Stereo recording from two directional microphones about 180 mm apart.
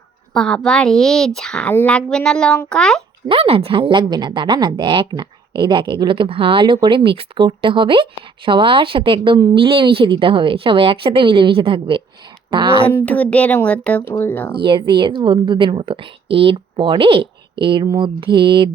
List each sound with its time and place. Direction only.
0.3 s a child's voice: 5° left (ahead or behind)
3.2 s speech: 30° right (ahead or behind)
12.9 s speech: 10° left (ahead or behind)
14.6 s speech: 25° right (ahead or behind)
17.8 s mantra: 15° right (ahead or behind)
18.2 s speech: 25° right (ahead or behind)